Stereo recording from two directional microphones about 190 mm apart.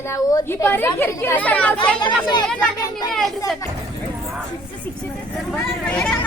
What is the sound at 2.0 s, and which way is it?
Speech, 25° left (ahead or behind).